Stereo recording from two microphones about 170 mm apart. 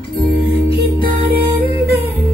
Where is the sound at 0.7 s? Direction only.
70° right (ahead or behind).